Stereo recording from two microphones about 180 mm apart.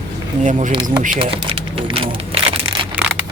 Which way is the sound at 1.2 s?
30° right (ahead or behind).